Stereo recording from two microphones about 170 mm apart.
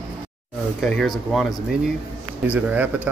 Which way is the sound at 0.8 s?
5° left (ahead or behind).